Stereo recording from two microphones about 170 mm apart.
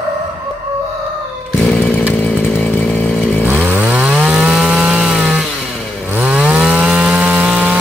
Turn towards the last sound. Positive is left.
turn(degrees=-5)  # may be behind; listen again after turning